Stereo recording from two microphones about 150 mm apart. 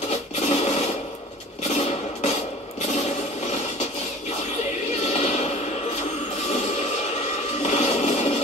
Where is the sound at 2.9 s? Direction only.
50° left (ahead or behind).